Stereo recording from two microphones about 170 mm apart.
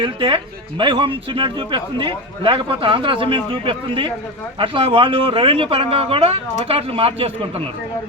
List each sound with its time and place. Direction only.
0.0 s speech: 30° right (ahead or behind)